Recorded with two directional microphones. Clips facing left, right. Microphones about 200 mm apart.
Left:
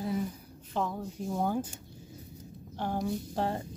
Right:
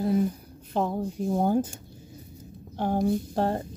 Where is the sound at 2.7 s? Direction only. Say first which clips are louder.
Right 7 dB; 50° right (ahead or behind).